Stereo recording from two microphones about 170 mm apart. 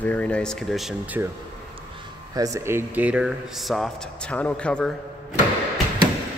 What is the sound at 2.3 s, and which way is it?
Speech, 20° right (ahead or behind).